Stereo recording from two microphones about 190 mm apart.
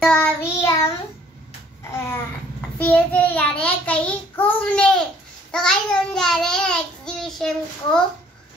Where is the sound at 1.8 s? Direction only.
15° left (ahead or behind).